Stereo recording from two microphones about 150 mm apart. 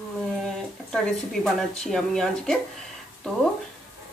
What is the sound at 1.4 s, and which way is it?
Speech, 5° left (ahead or behind).